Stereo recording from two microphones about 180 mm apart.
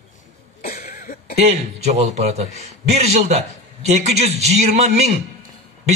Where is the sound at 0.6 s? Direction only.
55° left (ahead or behind).